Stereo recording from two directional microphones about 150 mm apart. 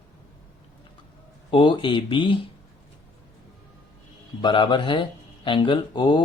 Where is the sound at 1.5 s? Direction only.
35° left (ahead or behind).